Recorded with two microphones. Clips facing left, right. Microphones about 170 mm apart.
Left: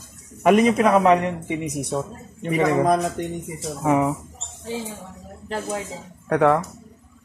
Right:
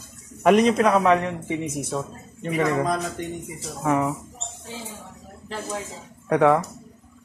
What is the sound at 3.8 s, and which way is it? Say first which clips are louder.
Speech: left 3 dB; 15° left (ahead or behind).